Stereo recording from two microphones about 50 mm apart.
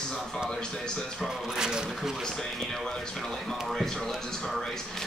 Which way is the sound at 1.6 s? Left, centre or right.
Centre.